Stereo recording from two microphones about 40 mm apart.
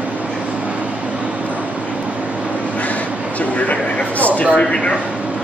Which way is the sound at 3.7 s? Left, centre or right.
Left.